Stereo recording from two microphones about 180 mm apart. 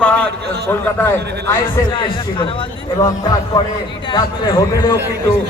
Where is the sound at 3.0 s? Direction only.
15° left (ahead or behind).